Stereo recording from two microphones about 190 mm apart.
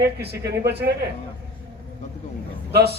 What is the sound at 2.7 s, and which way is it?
Speech, 60° right (ahead or behind).